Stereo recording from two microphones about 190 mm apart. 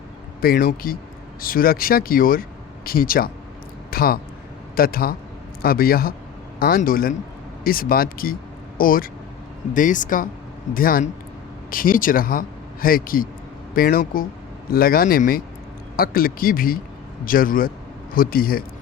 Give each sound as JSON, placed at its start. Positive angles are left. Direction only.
{"t": 0.4, "sound": "speech", "side_deg": 50}